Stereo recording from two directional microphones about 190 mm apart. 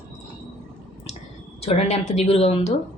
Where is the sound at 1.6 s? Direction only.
35° left (ahead or behind).